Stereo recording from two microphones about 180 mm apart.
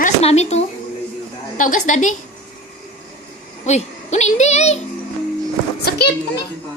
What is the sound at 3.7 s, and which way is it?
A child's voice, 40° left (ahead or behind).